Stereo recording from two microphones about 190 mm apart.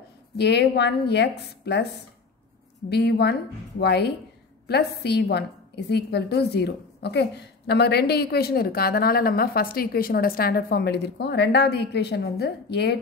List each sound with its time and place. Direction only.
0.4 s a woman's voice: 60° left (ahead or behind)
2.9 s a woman's voice: 60° left (ahead or behind)